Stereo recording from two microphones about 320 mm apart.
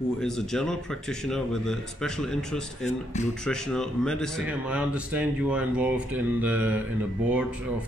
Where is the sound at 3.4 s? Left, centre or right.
Centre.